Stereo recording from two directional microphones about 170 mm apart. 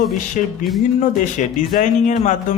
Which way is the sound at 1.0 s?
45° left (ahead or behind).